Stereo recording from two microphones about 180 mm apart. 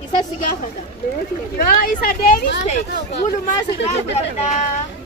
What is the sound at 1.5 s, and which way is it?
Speech, 55° left (ahead or behind).